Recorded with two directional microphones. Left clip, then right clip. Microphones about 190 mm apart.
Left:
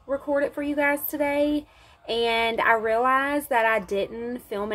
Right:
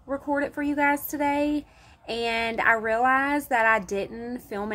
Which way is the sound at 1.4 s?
15° left (ahead or behind).